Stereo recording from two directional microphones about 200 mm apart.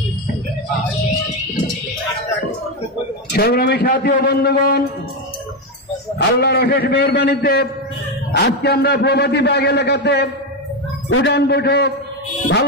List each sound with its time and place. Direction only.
3.3 s a man's voice: 50° left (ahead or behind)
6.1 s a man's voice: 55° left (ahead or behind)
11.1 s a man's voice: 80° left
11.3 s a man's voice: 55° left (ahead or behind)